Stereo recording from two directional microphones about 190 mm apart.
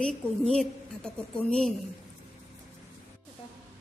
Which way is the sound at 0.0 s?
5° left (ahead or behind).